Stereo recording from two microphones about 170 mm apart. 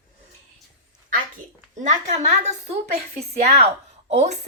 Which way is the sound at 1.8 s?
40° right (ahead or behind).